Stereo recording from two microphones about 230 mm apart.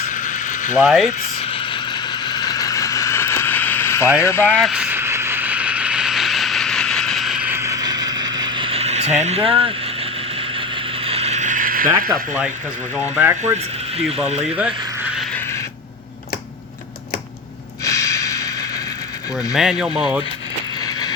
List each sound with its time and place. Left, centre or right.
0.0 s mechanisms: left
0.8 s speech: centre
1.2 s vehicle: left
4.2 s mechanisms: centre; by 9.1 s right
9.2 s speech: right
10.6 s mechanisms: right
12.0 s speech: centre
14.5 s a sound: centre
17.8 s snort: centre
19.5 s speech: centre